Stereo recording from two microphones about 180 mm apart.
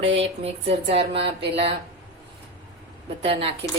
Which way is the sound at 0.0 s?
30° right (ahead or behind).